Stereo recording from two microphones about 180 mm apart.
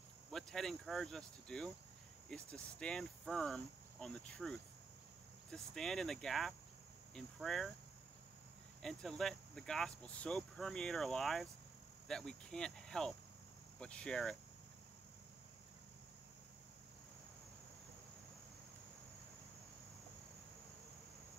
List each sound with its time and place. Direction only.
0.3 s speech: centre (ahead or behind)
8.8 s speech: centre (ahead or behind)